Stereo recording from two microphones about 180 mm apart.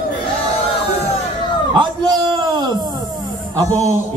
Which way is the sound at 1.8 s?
25° right (ahead or behind).